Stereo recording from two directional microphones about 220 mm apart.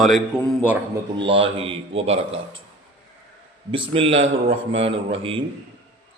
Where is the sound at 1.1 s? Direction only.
25° right (ahead or behind).